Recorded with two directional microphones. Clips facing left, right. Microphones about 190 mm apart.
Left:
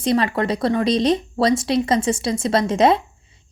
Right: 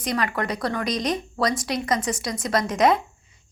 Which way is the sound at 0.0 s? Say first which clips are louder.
Left 6 dB; 25° left (ahead or behind).